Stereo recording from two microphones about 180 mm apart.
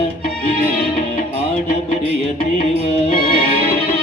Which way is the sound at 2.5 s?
30° left (ahead or behind).